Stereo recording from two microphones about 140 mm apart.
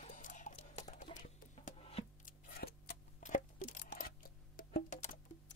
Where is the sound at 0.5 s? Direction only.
50° left (ahead or behind).